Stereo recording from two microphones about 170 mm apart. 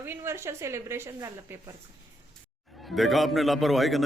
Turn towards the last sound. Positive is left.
turn(degrees=0)  # may be behind; listen again after turning